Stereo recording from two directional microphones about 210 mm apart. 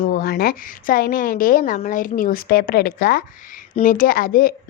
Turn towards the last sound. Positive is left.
turn(degrees=45)  # may be behind; listen again after turning